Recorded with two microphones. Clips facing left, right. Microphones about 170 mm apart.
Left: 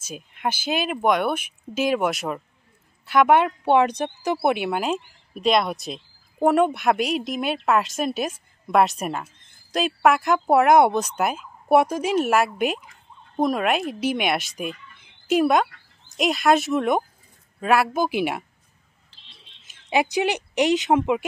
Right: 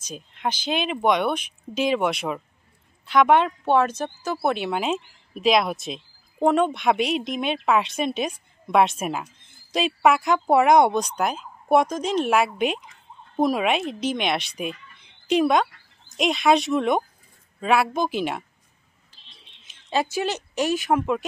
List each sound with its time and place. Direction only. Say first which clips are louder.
0.0 s speech: left 1 dB; 10° left (ahead or behind)
4.6 s speech: left 1 dB; centre (ahead or behind)
19.6 s speech: left 2 dB; 10° left (ahead or behind)